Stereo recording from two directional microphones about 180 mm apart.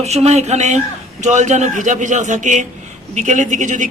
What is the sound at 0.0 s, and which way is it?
A man's voice, 35° right (ahead or behind).